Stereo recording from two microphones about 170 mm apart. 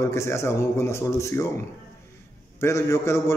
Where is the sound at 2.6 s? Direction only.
15° left (ahead or behind).